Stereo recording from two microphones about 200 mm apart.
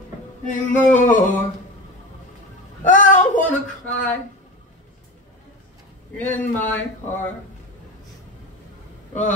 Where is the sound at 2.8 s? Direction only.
40° left (ahead or behind).